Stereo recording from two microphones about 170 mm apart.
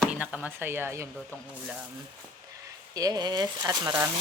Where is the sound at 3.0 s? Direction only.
20° right (ahead or behind).